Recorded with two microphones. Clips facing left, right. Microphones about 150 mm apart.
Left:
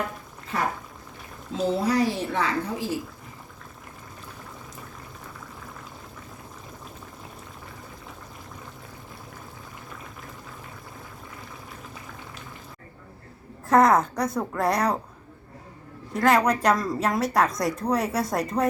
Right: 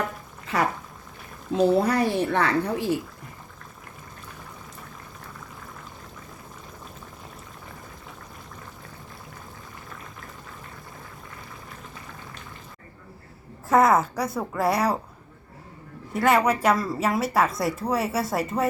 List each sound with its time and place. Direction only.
0.5 s speech: 80° right
1.5 s speech: 55° right (ahead or behind)
13.7 s a woman's voice: centre (ahead or behind)
16.1 s a woman's voice: 5° right (ahead or behind)